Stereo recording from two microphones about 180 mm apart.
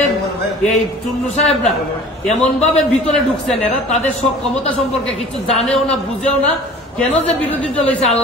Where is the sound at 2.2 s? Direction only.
40° left (ahead or behind).